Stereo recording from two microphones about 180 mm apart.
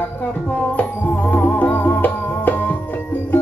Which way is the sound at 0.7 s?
10° left (ahead or behind).